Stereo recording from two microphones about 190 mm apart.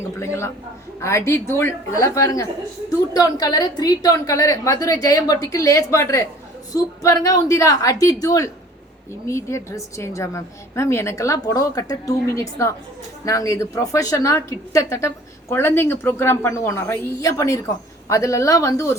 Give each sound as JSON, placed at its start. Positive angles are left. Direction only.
{"t": 0.2, "sound": "a woman's voice", "side_deg": 15}